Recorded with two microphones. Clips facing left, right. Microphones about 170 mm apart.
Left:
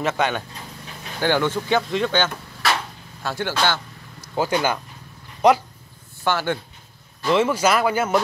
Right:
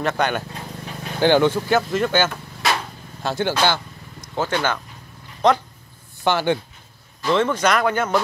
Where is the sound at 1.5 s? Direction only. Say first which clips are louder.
Right 2 dB; 5° right (ahead or behind).